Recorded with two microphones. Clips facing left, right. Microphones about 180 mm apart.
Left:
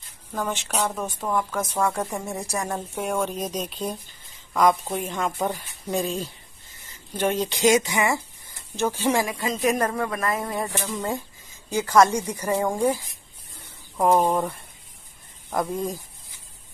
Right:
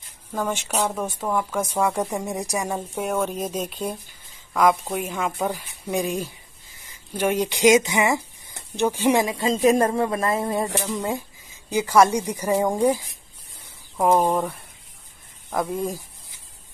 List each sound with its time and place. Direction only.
0.3 s speech: 10° right (ahead or behind)
11.0 s speech: 10° right (ahead or behind)